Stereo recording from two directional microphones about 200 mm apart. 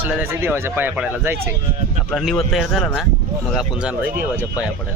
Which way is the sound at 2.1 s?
Centre (ahead or behind).